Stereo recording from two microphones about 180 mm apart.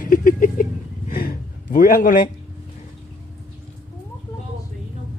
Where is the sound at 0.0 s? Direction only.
50° left (ahead or behind).